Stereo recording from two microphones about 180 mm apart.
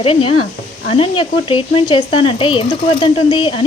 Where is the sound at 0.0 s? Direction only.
30° left (ahead or behind).